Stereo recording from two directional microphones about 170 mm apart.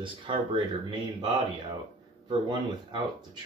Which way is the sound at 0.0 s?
30° right (ahead or behind).